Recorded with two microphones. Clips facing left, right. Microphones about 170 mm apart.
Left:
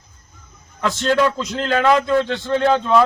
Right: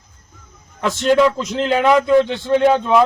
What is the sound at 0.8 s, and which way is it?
A man's voice, 15° right (ahead or behind).